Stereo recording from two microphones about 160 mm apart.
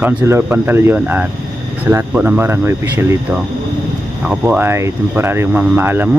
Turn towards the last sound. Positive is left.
turn(degrees=-15)  # may be behind; listen again after turning